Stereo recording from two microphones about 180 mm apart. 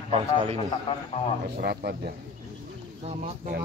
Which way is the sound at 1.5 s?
60° right (ahead or behind).